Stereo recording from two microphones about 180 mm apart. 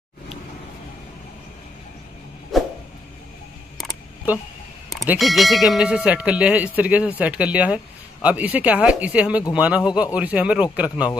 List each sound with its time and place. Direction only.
2.5 s a sound: centre (ahead or behind)
3.7 s camera: centre (ahead or behind)
5.1 s speech: centre (ahead or behind)